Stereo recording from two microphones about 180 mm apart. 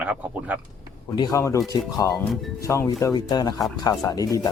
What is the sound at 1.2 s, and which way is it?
Speech, 20° left (ahead or behind).